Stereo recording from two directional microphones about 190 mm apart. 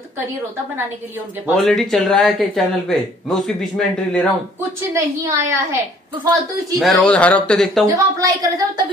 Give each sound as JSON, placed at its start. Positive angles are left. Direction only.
{"t": 1.6, "sound": "speech", "side_deg": 0}
{"t": 4.9, "sound": "a woman's voice", "side_deg": -15}
{"t": 6.8, "sound": "speech", "side_deg": 0}
{"t": 7.8, "sound": "a woman's voice", "side_deg": -15}